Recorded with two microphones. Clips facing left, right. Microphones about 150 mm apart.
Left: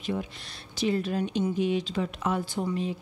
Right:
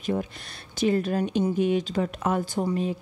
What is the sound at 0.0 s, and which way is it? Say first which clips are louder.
Speech: right 4 dB; 45° right (ahead or behind).